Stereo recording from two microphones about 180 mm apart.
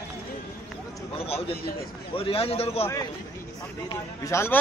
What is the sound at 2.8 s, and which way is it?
A man's voice, 20° left (ahead or behind).